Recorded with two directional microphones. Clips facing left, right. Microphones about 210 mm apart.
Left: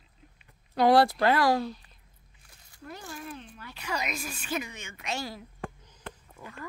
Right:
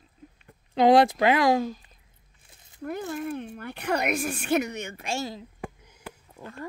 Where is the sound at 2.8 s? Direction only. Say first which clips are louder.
Right 10 dB; 55° right (ahead or behind).